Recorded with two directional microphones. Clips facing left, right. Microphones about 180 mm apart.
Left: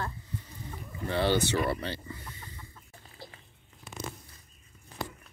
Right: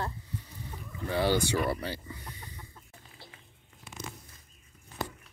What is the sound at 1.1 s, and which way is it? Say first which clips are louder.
Chicken: even; 10° right (ahead or behind).